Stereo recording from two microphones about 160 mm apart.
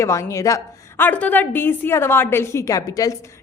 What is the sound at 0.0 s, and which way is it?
A woman's voice, 20° left (ahead or behind).